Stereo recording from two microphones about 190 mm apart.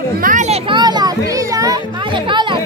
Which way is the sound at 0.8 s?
20° right (ahead or behind).